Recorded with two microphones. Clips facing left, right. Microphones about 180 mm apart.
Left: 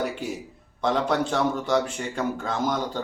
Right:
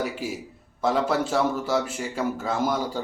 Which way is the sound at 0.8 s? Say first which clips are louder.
Even; 5° right (ahead or behind).